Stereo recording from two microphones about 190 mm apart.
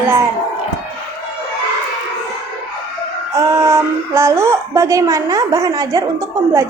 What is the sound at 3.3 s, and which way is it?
A child's voice, 15° right (ahead or behind).